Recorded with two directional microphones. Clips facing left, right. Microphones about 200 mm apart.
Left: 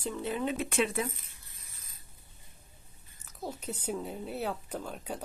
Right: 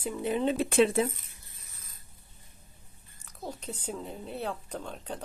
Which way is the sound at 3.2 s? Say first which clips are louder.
Even; 5° left (ahead or behind).